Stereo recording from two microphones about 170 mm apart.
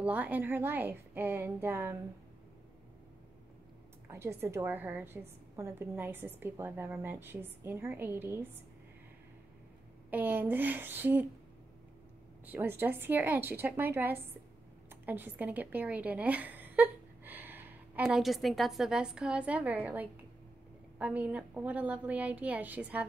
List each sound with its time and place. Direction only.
0.0 s a woman's voice: 10° right (ahead or behind)
4.1 s a woman's voice: 15° right (ahead or behind)
10.1 s a woman's voice: 10° right (ahead or behind)
12.4 s a woman's voice: 10° right (ahead or behind)